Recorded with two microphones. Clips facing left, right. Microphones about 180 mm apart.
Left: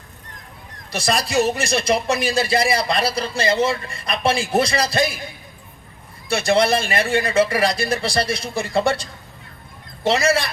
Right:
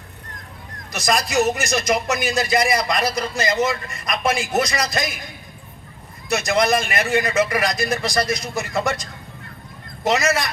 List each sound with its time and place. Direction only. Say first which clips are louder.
0.9 s speech: even; 30° left (ahead or behind)
6.2 s speech: left 2 dB; 30° left (ahead or behind)